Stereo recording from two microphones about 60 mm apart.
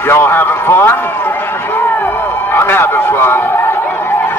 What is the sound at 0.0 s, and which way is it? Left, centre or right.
Run, left.